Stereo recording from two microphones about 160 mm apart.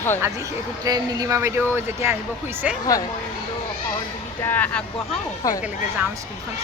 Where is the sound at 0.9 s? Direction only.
25° right (ahead or behind).